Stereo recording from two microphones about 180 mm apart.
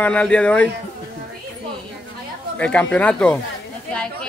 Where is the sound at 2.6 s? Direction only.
5° left (ahead or behind).